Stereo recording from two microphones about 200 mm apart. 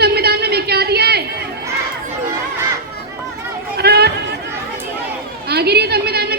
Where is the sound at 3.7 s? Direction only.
55° right (ahead or behind).